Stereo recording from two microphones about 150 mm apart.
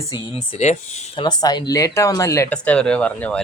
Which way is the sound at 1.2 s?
30° left (ahead or behind).